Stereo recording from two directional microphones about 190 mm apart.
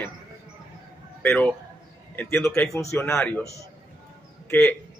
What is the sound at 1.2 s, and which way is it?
A man's voice, 10° left (ahead or behind).